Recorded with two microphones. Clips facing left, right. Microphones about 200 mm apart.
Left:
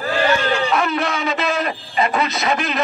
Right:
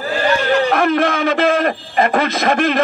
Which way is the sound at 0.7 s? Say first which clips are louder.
Right 5 dB; 50° right (ahead or behind).